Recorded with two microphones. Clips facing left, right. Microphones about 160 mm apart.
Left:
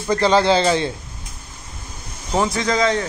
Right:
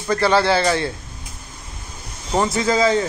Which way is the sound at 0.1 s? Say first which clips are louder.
Left 1 dB; 15° left (ahead or behind).